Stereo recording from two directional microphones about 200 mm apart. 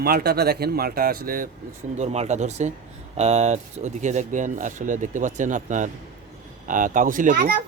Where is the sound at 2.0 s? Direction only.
35° right (ahead or behind).